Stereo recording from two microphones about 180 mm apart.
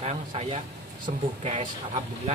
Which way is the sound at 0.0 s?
35° right (ahead or behind).